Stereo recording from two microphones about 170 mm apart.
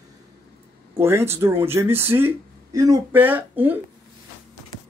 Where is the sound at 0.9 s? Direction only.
15° right (ahead or behind).